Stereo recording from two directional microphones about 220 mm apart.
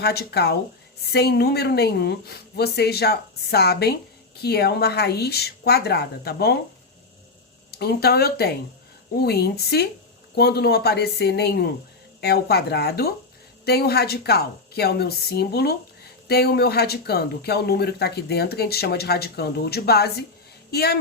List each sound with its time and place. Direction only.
0.0 s speech: 45° left (ahead or behind)
7.7 s speech: 45° left (ahead or behind)